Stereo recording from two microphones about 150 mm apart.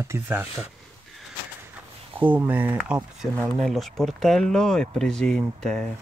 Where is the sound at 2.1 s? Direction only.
10° right (ahead or behind).